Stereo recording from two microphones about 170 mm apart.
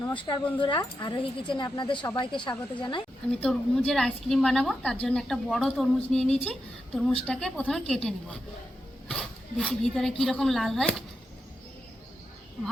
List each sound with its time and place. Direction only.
0.1 s speech: 30° left (ahead or behind)
3.4 s a woman's voice: 5° left (ahead or behind)